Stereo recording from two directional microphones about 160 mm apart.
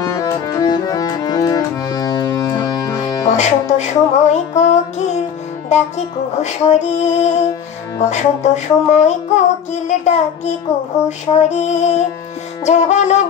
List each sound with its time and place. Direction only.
0.0 s music: 20° left (ahead or behind)
3.3 s music: 45° left (ahead or behind)
5.7 s child singing: 45° left (ahead or behind)